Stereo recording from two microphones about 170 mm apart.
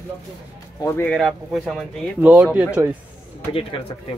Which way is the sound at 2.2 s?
10° right (ahead or behind).